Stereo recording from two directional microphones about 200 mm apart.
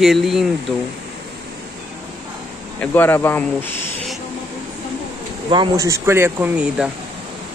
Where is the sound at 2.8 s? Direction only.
10° left (ahead or behind).